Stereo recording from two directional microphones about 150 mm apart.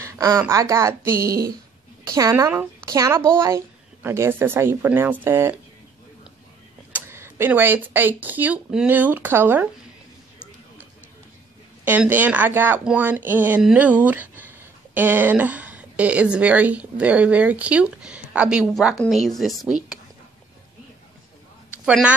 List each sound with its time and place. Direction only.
0.0 s a woman's voice: 20° right (ahead or behind)
6.9 s a woman's voice: 15° right (ahead or behind)
11.8 s a woman's voice: 10° right (ahead or behind)
21.6 s a sound: 10° right (ahead or behind)